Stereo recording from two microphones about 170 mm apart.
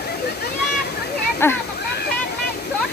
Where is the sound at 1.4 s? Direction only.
15° left (ahead or behind).